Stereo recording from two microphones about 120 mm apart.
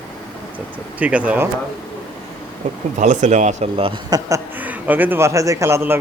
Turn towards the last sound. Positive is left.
turn(degrees=-20)  # may be behind; listen again after turning